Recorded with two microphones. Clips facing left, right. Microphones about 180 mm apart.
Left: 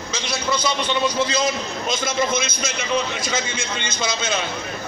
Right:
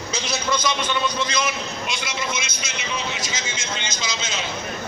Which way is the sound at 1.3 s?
35° left (ahead or behind).